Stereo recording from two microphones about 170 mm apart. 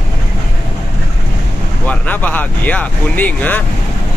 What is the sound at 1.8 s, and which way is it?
Speech, 10° left (ahead or behind).